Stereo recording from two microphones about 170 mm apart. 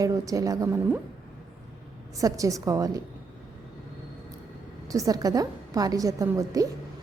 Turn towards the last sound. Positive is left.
turn(degrees=-20)  # may be behind; listen again after turning